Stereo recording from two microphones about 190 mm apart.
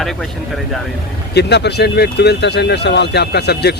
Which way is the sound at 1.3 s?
60° left (ahead or behind).